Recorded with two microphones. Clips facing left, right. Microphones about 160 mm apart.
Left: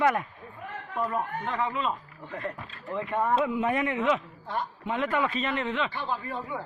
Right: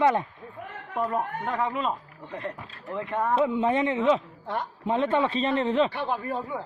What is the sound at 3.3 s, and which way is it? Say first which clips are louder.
A man's voice: right 6 dB; 25° right (ahead or behind).